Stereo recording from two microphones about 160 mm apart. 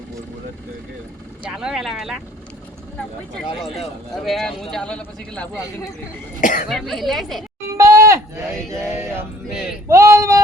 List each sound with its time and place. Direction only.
1.5 s speech: 5° right (ahead or behind)
4.1 s speech: centre (ahead or behind)
6.4 s speech: 55° left (ahead or behind)
6.7 s speech: centre (ahead or behind)
7.8 s a sound: 20° right (ahead or behind)